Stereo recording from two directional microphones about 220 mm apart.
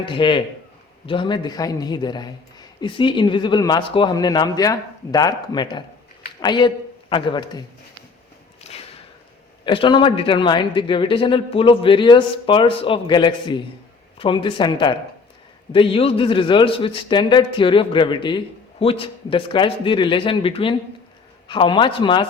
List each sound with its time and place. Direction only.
0.0 s a man's voice: 20° left (ahead or behind)
8.6 s whip: 30° left (ahead or behind)
9.6 s a man's voice: 20° left (ahead or behind)